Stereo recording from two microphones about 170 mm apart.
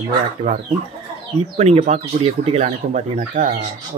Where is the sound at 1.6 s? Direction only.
40° right (ahead or behind).